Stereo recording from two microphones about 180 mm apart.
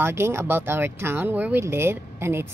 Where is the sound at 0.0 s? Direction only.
15° right (ahead or behind).